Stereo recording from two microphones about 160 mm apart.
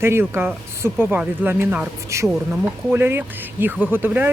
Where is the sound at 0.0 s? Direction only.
15° right (ahead or behind).